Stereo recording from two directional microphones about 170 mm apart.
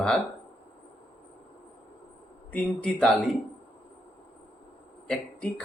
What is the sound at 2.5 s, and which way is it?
Speech, 5° left (ahead or behind).